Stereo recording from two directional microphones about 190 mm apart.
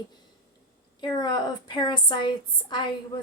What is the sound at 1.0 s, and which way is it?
A woman's voice, 20° left (ahead or behind).